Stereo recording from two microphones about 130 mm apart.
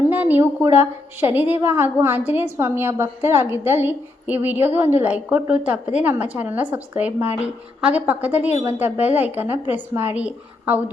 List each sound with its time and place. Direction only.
0.1 s a woman's voice: 15° right (ahead or behind)